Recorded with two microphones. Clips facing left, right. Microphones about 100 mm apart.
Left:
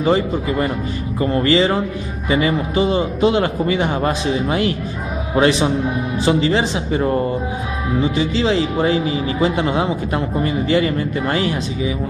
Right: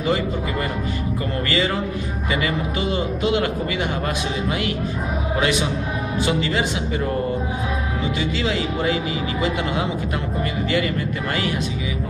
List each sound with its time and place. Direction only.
0.0 s speech: 30° left (ahead or behind)
8.2 s speech: 30° left (ahead or behind)